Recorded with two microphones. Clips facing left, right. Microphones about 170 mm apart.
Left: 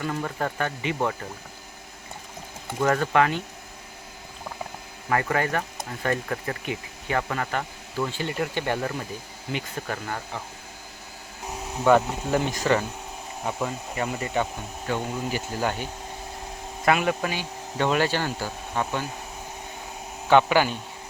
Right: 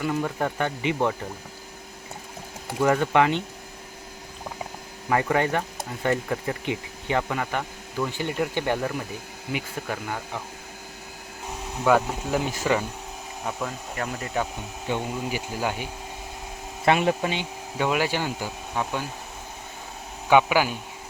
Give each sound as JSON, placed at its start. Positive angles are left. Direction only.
{"t": 0.0, "sound": "speech", "side_deg": -10}
{"t": 2.8, "sound": "speech", "side_deg": -15}
{"t": 5.1, "sound": "speech", "side_deg": -20}
{"t": 11.9, "sound": "speech", "side_deg": -5}
{"t": 13.4, "sound": "speech", "side_deg": 5}
{"t": 14.8, "sound": "speech", "side_deg": -15}
{"t": 16.8, "sound": "speech", "side_deg": -25}
{"t": 17.7, "sound": "speech", "side_deg": -10}
{"t": 20.3, "sound": "speech", "side_deg": -10}